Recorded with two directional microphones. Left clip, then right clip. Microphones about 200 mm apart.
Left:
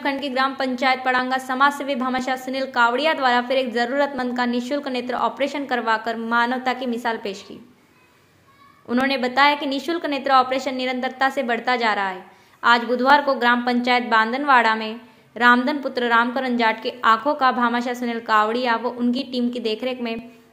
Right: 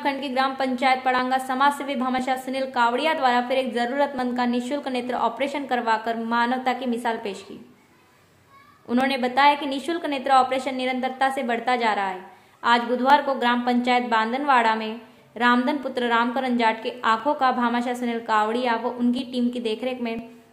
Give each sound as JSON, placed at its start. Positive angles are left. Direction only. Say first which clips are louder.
{"t": 0.0, "sound": "a woman's voice", "louder": "left 2 dB", "side_deg": 0}
{"t": 8.8, "sound": "a woman's voice", "louder": "left 2 dB", "side_deg": 5}